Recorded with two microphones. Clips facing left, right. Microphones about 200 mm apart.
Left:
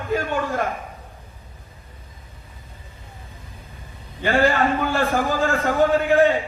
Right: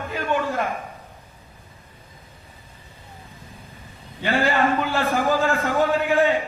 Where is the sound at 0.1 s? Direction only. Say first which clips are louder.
Left 2 dB; 50° left (ahead or behind).